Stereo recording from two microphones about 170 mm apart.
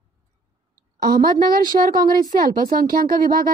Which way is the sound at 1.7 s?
40° right (ahead or behind).